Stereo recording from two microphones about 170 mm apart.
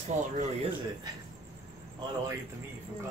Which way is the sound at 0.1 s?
45° right (ahead or behind).